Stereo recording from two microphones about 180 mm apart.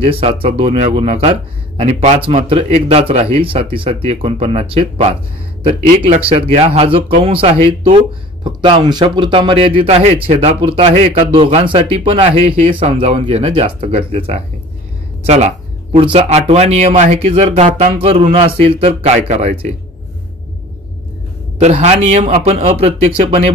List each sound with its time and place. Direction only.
0.0 s speech: 30° right (ahead or behind)
21.5 s speech: 35° right (ahead or behind)